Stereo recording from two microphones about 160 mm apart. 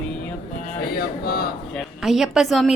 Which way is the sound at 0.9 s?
75° left (ahead or behind).